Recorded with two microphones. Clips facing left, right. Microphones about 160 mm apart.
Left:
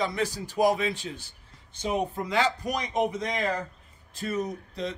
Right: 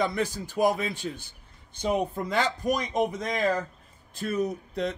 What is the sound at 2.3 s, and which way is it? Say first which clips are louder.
Speech: right 1 dB; 50° right (ahead or behind).